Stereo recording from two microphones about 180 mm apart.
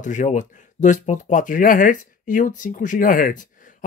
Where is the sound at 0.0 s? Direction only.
45° left (ahead or behind).